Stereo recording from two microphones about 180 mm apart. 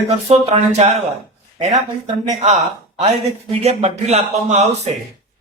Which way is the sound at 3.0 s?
35° right (ahead or behind).